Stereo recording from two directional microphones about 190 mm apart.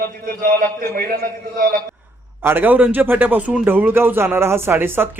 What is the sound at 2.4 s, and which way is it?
Speech, 10° right (ahead or behind).